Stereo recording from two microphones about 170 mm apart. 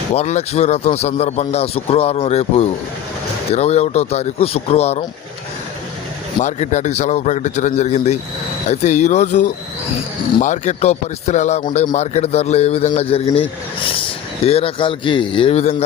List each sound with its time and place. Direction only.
0.1 s speech: 40° left (ahead or behind)
6.4 s a man's voice: 45° left (ahead or behind)